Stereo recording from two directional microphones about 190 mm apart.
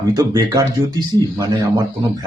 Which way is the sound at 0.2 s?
20° right (ahead or behind).